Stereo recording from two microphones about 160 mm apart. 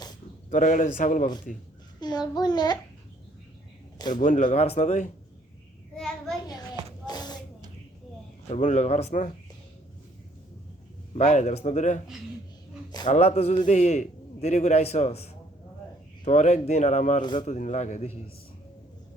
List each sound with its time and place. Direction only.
0.5 s a man's voice: 55° left (ahead or behind)
2.0 s a child's voice: 25° left (ahead or behind)
4.1 s a man's voice: 50° left (ahead or behind)
6.0 s child singing: 5° left (ahead or behind)
7.0 s a sound: 25° left (ahead or behind)
8.4 s a man's voice: 45° left (ahead or behind)
11.1 s a man's voice: 45° left (ahead or behind)
13.1 s a sound: 40° left (ahead or behind)
13.7 s a man's voice: 45° left (ahead or behind)